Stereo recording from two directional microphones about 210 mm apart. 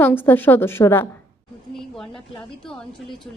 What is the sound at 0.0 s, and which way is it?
A woman's voice, 10° left (ahead or behind).